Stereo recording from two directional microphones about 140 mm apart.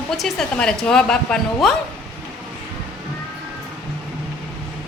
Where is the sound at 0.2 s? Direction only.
5° left (ahead or behind).